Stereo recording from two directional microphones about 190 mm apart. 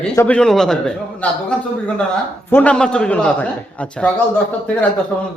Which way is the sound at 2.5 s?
5° left (ahead or behind).